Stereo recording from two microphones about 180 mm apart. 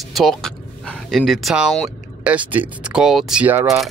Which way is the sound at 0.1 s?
Centre (ahead or behind).